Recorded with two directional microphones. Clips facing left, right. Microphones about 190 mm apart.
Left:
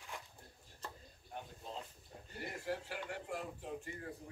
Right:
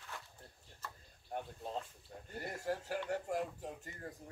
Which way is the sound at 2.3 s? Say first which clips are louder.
Right 2 dB; 45° right (ahead or behind).